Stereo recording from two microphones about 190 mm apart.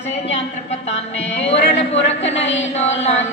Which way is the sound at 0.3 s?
35° left (ahead or behind).